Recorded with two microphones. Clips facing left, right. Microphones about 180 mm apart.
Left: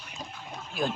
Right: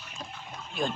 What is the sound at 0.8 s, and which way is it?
Speech, centre (ahead or behind).